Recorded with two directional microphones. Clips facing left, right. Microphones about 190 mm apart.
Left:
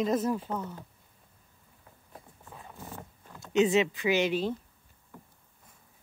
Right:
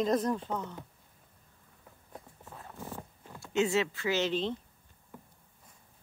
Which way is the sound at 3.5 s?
20° left (ahead or behind).